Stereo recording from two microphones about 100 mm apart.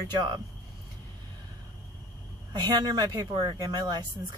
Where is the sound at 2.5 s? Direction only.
45° right (ahead or behind).